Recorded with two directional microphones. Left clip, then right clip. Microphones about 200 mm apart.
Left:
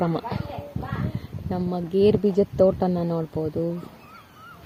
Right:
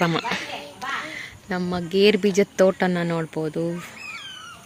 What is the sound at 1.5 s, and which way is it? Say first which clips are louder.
Speech: right 1 dB; 15° right (ahead or behind).